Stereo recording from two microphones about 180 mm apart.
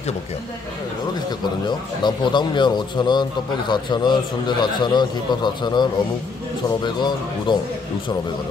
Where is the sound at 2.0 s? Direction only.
25° left (ahead or behind).